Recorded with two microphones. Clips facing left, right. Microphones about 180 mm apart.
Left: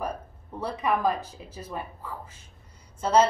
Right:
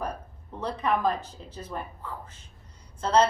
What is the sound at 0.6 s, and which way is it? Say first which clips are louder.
A woman's voice: even; 10° left (ahead or behind).